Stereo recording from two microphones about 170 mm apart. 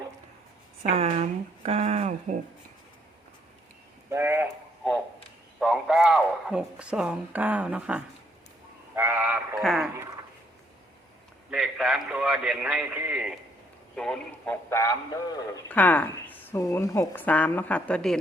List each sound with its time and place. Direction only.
0.8 s speech: 40° right (ahead or behind)
4.1 s speech: 15° right (ahead or behind)
5.5 s speech: 5° right (ahead or behind)
11.5 s speech: 5° right (ahead or behind)
13.9 s a man's voice: 5° left (ahead or behind)